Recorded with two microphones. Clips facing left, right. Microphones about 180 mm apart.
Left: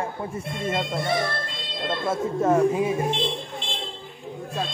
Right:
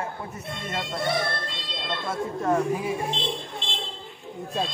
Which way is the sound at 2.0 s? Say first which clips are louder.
Left 4 dB; 25° left (ahead or behind).